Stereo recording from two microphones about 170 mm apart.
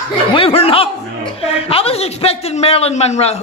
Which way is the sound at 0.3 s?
35° left (ahead or behind).